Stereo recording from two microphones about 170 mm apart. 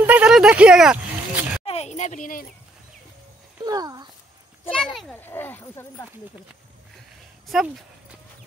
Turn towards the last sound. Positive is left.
turn(degrees=0)  # may be behind; listen again after turning